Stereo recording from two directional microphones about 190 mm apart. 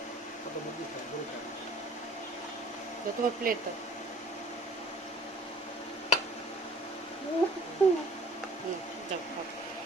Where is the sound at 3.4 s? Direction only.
50° right (ahead or behind).